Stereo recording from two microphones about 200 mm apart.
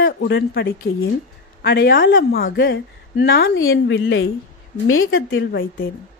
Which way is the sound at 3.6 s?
70° left (ahead or behind).